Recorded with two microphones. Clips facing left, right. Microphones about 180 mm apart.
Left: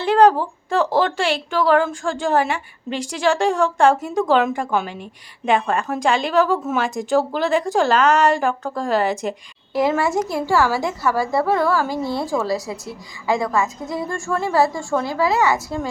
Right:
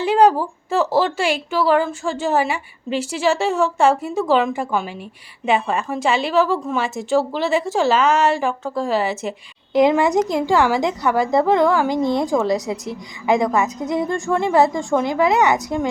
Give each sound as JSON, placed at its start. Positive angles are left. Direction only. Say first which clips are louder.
{"t": 0.0, "sound": "a woman's voice", "louder": "even", "side_deg": -10}
{"t": 9.7, "sound": "a woman's voice", "louder": "right 4 dB", "side_deg": -20}